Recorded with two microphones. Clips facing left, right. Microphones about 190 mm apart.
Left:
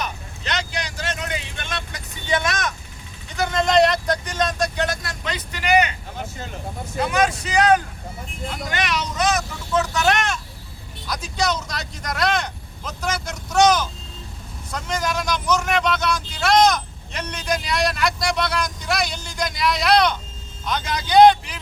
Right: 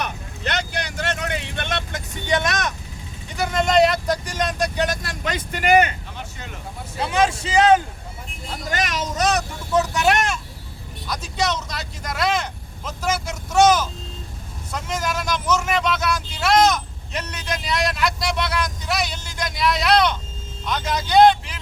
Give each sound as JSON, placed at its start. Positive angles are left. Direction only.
{"t": 0.0, "sound": "vehicle", "side_deg": -55}
{"t": 3.3, "sound": "vehicle", "side_deg": -5}
{"t": 5.2, "sound": "speech", "side_deg": -50}
{"t": 7.0, "sound": "speech", "side_deg": -25}
{"t": 8.7, "sound": "speech", "side_deg": -45}
{"t": 9.7, "sound": "speech", "side_deg": -15}